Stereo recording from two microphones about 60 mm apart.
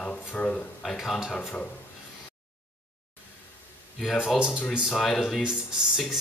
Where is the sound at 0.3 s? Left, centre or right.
Left.